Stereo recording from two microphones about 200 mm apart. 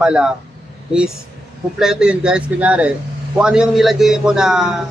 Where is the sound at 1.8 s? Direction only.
5° right (ahead or behind).